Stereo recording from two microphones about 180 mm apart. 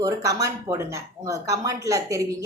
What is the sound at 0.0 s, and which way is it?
Speech, 20° right (ahead or behind).